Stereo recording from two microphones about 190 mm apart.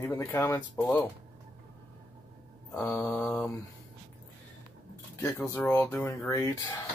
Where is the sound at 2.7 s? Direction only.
5° left (ahead or behind).